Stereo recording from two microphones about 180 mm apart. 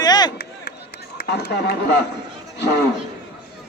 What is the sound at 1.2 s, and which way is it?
Speech, 65° left (ahead or behind).